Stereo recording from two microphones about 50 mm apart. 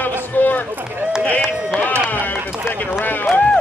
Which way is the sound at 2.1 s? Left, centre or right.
Left.